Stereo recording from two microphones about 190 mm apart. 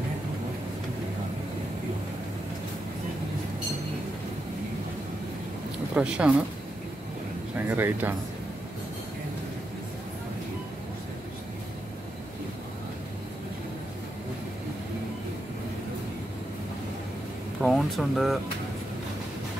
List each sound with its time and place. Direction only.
5.9 s speech: 5° right (ahead or behind)
7.6 s speech: 10° right (ahead or behind)
17.6 s speech: centre (ahead or behind)